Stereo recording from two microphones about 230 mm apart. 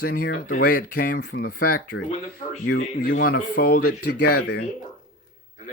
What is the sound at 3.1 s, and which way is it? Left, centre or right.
Speech, left.